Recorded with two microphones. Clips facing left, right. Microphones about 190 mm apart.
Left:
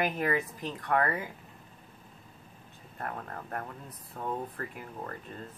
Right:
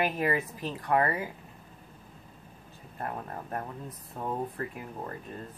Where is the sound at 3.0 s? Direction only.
20° right (ahead or behind).